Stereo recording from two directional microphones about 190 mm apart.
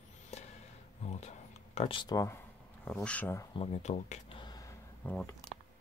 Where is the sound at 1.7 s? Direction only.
30° left (ahead or behind); by 3.4 s 10° left (ahead or behind).